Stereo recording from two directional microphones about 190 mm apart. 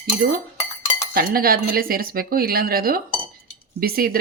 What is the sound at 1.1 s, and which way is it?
Speech, 50° right (ahead or behind).